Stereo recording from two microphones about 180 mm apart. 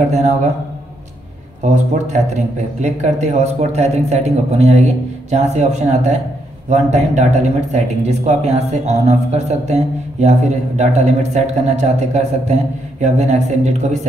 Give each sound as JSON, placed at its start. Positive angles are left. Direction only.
{"t": 0.1, "sound": "speech", "side_deg": -40}
{"t": 1.6, "sound": "speech", "side_deg": -40}